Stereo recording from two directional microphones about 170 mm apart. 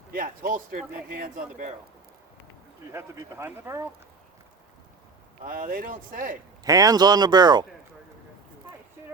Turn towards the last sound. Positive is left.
turn(degrees=-25)  # may be behind; listen again after turning